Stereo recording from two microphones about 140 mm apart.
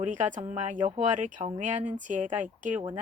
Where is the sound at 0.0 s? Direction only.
65° right (ahead or behind).